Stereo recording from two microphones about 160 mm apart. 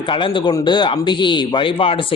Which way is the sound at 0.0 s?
30° left (ahead or behind).